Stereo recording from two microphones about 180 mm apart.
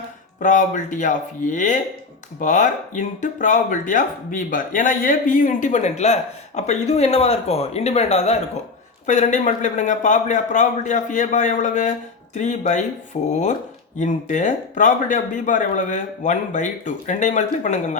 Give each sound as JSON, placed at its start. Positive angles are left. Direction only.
{"t": 0.3, "sound": "speech", "side_deg": 45}